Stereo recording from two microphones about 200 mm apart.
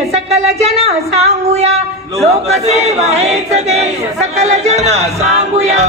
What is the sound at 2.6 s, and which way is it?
Speech, 30° right (ahead or behind).